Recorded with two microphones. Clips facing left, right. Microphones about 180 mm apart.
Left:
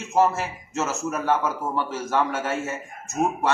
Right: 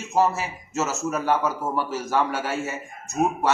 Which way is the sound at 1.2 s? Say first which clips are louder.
Even; 10° right (ahead or behind).